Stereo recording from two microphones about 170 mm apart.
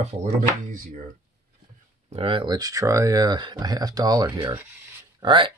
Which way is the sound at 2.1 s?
30° right (ahead or behind).